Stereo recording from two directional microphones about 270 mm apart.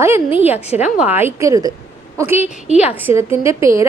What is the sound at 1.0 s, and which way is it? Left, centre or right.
A woman's voice, centre.